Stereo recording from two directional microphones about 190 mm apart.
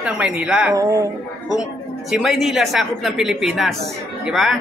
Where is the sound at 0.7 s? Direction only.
20° right (ahead or behind).